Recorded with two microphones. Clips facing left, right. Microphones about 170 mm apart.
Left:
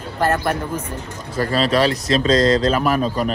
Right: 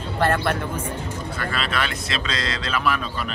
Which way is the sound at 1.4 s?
35° left (ahead or behind).